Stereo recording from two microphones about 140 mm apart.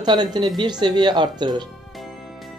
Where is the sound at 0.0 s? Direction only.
30° right (ahead or behind).